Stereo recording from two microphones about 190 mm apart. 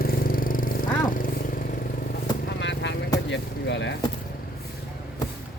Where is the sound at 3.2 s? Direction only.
70° left (ahead or behind).